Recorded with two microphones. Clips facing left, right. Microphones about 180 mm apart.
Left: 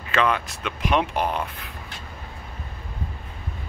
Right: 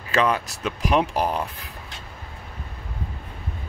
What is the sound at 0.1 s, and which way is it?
Speech, 35° right (ahead or behind).